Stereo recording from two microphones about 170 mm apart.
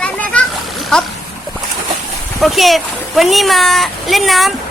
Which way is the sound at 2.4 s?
Centre (ahead or behind).